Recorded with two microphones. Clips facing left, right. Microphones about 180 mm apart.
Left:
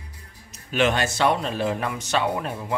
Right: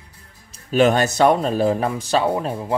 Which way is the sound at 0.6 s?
40° right (ahead or behind).